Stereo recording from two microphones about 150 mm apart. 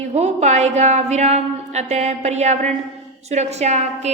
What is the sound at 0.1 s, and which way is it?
A woman's voice, 45° right (ahead or behind).